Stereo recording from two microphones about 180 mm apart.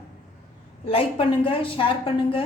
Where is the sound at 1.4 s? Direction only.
30° left (ahead or behind).